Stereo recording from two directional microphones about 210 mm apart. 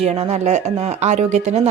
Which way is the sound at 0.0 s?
30° right (ahead or behind).